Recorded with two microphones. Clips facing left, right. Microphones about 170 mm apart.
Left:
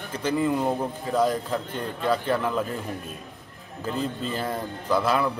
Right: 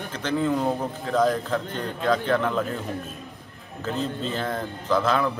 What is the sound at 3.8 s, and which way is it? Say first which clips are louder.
Speech: right 1 dB; 10° left (ahead or behind).